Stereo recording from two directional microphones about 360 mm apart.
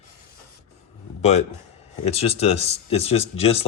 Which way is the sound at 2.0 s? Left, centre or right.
Centre.